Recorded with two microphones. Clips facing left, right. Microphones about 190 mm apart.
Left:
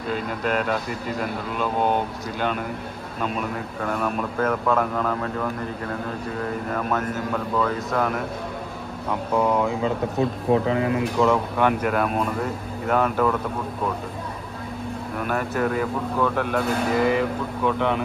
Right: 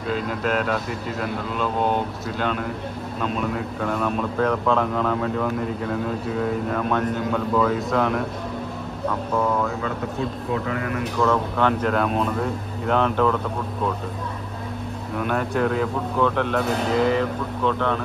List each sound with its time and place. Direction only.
0.1 s speech: centre (ahead or behind)
6.7 s speech: 5° left (ahead or behind)
9.3 s speech: 15° left (ahead or behind)
15.1 s speech: 5° left (ahead or behind)